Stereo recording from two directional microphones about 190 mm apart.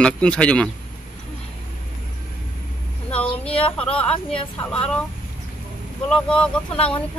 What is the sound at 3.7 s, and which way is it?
Speech, 5° left (ahead or behind).